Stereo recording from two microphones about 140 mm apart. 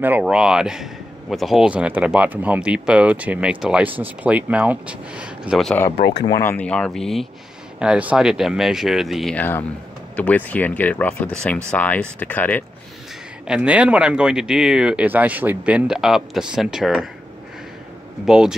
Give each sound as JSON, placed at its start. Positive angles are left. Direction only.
{"t": 0.0, "sound": "speech", "side_deg": -10}
{"t": 5.8, "sound": "speech", "side_deg": 25}
{"t": 6.5, "sound": "speech", "side_deg": 10}
{"t": 10.1, "sound": "speech", "side_deg": 10}
{"t": 13.5, "sound": "speech", "side_deg": -5}
{"t": 18.2, "sound": "speech", "side_deg": -5}